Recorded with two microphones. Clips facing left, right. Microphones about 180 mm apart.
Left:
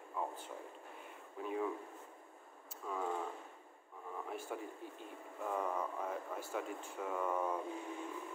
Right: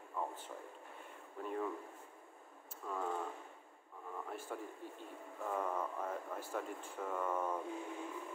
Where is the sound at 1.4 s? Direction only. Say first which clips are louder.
Left 2 dB; 5° left (ahead or behind).